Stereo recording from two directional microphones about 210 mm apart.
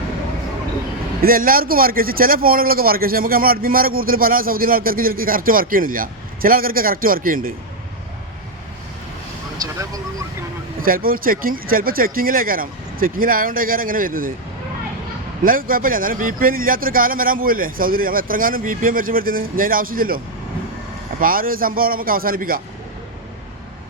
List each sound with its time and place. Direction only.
1.2 s a man's voice: 45° right (ahead or behind)
9.6 s vehicle: 15° right (ahead or behind)
10.8 s a man's voice: 45° right (ahead or behind)
15.4 s a man's voice: 40° right (ahead or behind)